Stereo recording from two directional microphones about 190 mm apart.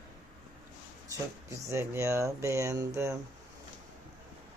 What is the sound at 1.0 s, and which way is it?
Speech, 15° right (ahead or behind).